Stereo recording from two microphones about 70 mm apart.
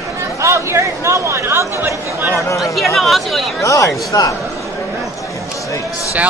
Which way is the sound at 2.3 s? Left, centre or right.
Left.